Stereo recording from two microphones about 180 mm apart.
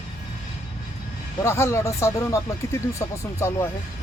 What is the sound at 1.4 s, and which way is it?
Speech, 15° left (ahead or behind).